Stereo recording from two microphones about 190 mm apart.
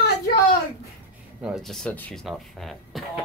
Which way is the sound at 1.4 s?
Centre (ahead or behind).